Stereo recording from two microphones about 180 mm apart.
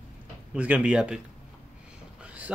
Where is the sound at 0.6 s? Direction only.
5° right (ahead or behind).